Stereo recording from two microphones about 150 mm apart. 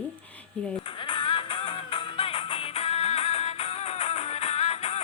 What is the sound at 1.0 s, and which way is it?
Music, 35° left (ahead or behind).